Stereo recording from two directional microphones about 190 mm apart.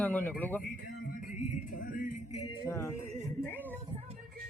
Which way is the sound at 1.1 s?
45° left (ahead or behind).